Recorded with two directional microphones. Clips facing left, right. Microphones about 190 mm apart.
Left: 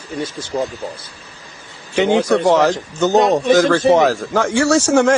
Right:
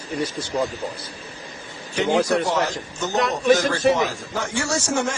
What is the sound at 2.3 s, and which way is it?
Speech, 75° left (ahead or behind).